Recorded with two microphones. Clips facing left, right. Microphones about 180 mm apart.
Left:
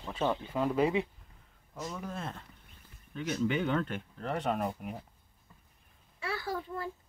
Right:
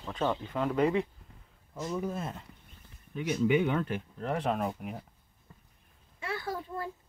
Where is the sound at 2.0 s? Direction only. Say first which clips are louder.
Right 5 dB; 5° right (ahead or behind).